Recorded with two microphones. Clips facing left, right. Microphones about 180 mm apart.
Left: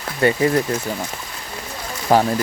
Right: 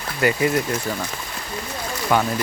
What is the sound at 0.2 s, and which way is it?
Speech, 30° left (ahead or behind).